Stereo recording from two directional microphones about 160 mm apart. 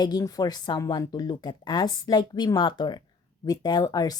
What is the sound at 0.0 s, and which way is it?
Speech, 25° left (ahead or behind).